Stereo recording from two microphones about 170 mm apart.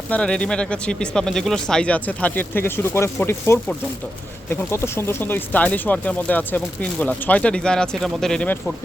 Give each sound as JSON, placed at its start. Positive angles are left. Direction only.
{"t": 0.1, "sound": "speech", "side_deg": 5}